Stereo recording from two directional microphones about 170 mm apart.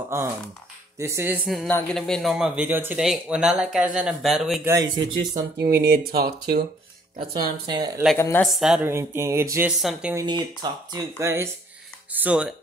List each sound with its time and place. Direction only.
0.9 s a sound: 15° right (ahead or behind)
2.0 s speech: 5° left (ahead or behind)
4.6 s speech: 20° right (ahead or behind)
5.6 s speech: 65° right (ahead or behind)
7.2 s speech: 25° right (ahead or behind)
8.2 s speech: 15° left (ahead or behind)
8.5 s speech: 5° right (ahead or behind)
8.8 s a sound: 15° right (ahead or behind)
9.7 s speech: 5° right (ahead or behind)
10.1 s speech: 25° right (ahead or behind)
12.1 s a sound: 10° right (ahead or behind)